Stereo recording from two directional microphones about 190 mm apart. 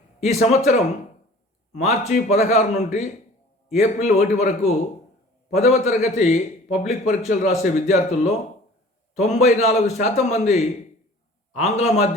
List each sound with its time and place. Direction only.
0.2 s a man's voice: 35° left (ahead or behind)